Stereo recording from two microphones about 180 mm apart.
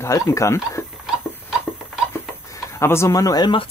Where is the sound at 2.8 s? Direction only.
15° left (ahead or behind).